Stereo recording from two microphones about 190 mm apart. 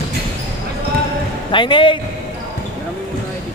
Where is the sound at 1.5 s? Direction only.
25° left (ahead or behind).